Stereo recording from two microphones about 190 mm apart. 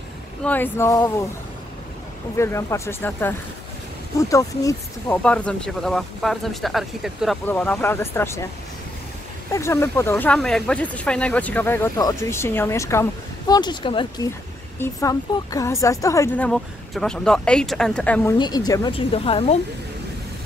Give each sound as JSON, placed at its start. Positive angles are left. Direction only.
{"t": 0.4, "sound": "speech", "side_deg": 10}
{"t": 2.3, "sound": "speech", "side_deg": 15}
{"t": 5.2, "sound": "speech", "side_deg": 5}
{"t": 9.5, "sound": "speech", "side_deg": 15}
{"t": 16.4, "sound": "speech", "side_deg": 0}
{"t": 18.4, "sound": "speech", "side_deg": 20}